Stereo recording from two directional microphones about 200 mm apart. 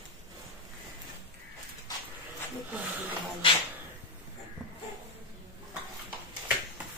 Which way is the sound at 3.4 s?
25° left (ahead or behind).